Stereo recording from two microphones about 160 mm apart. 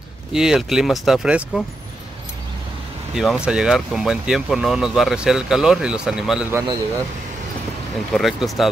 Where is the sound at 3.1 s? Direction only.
Centre (ahead or behind).